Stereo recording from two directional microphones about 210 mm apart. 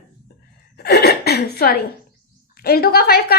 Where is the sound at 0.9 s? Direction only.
50° left (ahead or behind).